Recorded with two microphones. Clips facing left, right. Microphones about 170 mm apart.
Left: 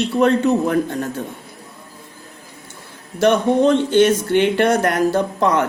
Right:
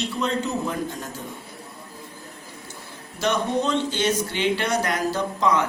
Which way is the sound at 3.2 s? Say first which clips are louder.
Left 9 dB; 55° left (ahead or behind).